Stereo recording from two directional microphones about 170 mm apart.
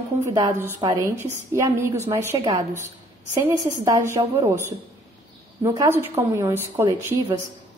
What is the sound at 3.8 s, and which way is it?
A woman's voice, 20° right (ahead or behind).